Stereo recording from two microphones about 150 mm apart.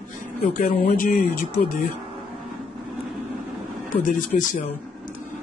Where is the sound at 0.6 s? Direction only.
65° left (ahead or behind).